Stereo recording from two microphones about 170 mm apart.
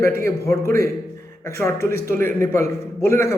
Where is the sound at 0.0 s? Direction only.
15° left (ahead or behind).